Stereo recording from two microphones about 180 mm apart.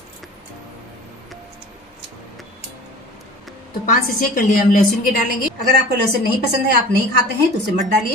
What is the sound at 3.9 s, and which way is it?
A woman's voice, 50° left (ahead or behind).